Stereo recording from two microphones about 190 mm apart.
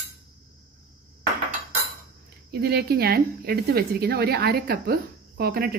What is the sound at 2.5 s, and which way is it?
A woman's voice, 55° right (ahead or behind).